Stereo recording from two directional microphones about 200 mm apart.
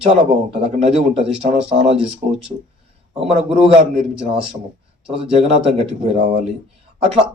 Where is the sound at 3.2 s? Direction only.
30° right (ahead or behind).